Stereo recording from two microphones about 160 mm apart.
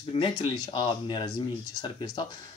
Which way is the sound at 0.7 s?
30° left (ahead or behind).